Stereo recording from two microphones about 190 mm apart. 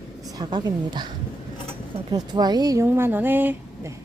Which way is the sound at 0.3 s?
20° right (ahead or behind).